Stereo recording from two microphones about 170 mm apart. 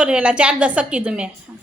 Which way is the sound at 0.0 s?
5° right (ahead or behind).